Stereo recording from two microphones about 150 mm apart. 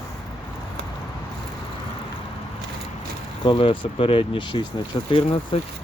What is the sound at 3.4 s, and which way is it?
Speech, 35° left (ahead or behind).